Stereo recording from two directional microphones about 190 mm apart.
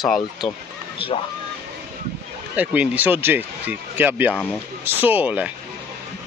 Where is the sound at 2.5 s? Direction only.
10° right (ahead or behind).